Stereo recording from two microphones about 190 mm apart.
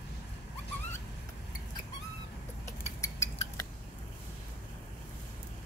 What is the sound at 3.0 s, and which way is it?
Cutlery, 15° left (ahead or behind).